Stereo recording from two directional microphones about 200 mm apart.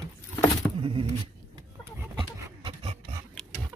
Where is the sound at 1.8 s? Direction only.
10° right (ahead or behind).